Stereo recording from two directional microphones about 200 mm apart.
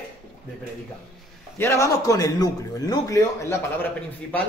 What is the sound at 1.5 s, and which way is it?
A man's voice, 15° left (ahead or behind).